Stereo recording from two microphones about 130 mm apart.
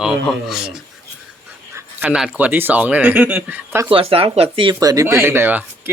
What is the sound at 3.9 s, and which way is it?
Speech, 45° right (ahead or behind).